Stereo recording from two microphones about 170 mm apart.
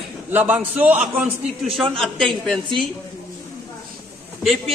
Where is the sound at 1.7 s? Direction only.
Centre (ahead or behind).